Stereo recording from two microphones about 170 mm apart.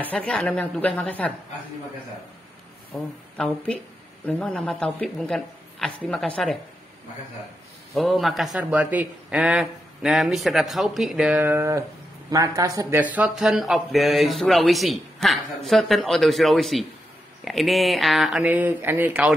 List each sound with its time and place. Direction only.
0.0 s speech: 5° left (ahead or behind)
2.9 s a man's voice: 5° left (ahead or behind)
7.9 s a man's voice: centre (ahead or behind); by 13.0 s 20° right (ahead or behind)
13.0 s a man's voice: 5° right (ahead or behind)